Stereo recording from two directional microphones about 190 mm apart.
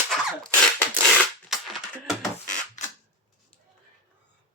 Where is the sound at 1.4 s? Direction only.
Centre (ahead or behind).